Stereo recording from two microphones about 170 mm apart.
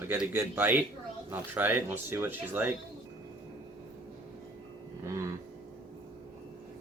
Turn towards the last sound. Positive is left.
turn(degrees=-15)  # may be behind; listen again after turning